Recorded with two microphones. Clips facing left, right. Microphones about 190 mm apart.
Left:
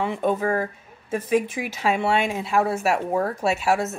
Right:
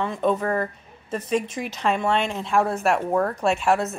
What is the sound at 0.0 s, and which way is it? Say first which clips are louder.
A woman's voice: even; 10° left (ahead or behind).